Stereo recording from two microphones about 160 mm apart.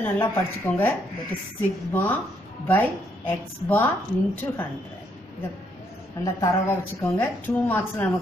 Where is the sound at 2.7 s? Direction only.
10° left (ahead or behind).